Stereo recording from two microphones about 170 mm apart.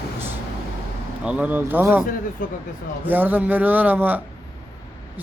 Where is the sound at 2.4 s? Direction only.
55° left (ahead or behind).